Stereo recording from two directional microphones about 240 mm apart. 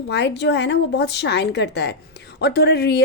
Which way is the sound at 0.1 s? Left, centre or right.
Left.